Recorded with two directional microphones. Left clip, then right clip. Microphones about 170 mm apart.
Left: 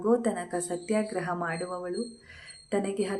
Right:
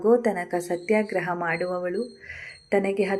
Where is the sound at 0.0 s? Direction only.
10° right (ahead or behind).